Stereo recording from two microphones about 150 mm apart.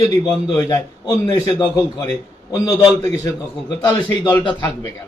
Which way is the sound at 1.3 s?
25° left (ahead or behind).